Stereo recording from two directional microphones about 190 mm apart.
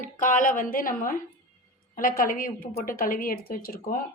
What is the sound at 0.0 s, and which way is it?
Speech, 45° left (ahead or behind).